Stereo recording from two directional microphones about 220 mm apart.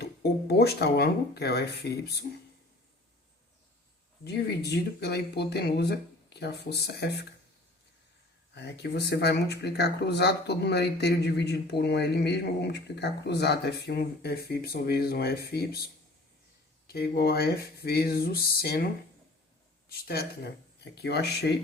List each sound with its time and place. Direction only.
0.0 s speech: 45° left (ahead or behind)
4.2 s speech: 45° left (ahead or behind)
8.5 s speech: 50° left (ahead or behind)
19.9 s speech: 45° left (ahead or behind)